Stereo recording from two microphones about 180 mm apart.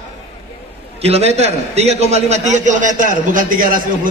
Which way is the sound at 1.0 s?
35° right (ahead or behind).